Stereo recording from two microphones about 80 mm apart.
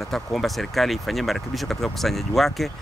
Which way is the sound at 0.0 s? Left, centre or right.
Centre.